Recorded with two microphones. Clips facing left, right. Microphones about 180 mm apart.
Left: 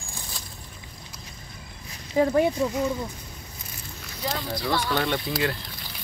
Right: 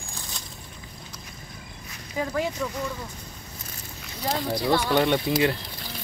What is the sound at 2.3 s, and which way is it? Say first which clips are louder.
Speech: left 6 dB; 25° left (ahead or behind).